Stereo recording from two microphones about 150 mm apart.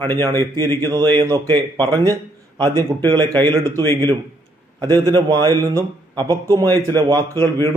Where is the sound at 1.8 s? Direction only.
30° right (ahead or behind).